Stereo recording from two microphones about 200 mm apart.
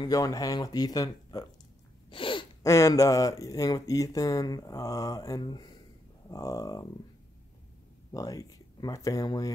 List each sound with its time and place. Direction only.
0.0 s speech: 15° left (ahead or behind)
2.0 s sneeze: 25° left (ahead or behind)
2.6 s speech: 15° left (ahead or behind)
8.1 s speech: 15° left (ahead or behind)